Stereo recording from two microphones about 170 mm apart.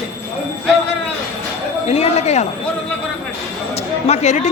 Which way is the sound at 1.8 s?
40° left (ahead or behind).